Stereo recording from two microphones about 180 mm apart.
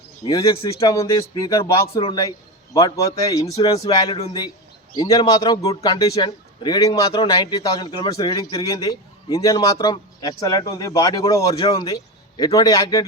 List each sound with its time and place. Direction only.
0.3 s a man's voice: 25° left (ahead or behind)